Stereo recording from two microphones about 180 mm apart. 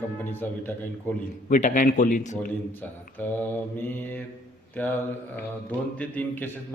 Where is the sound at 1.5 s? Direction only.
45° left (ahead or behind).